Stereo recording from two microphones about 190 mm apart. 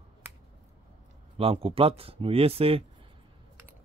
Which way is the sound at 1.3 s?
30° right (ahead or behind).